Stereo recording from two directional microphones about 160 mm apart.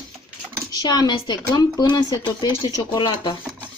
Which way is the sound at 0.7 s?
25° left (ahead or behind).